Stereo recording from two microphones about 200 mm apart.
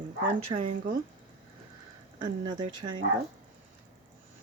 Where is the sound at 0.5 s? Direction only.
30° right (ahead or behind).